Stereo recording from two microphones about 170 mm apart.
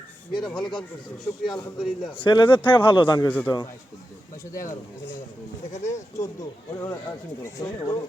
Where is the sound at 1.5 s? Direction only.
25° left (ahead or behind).